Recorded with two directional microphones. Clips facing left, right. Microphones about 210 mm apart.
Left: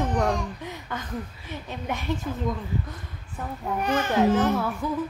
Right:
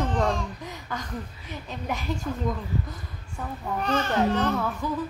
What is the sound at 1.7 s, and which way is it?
Speech, centre (ahead or behind).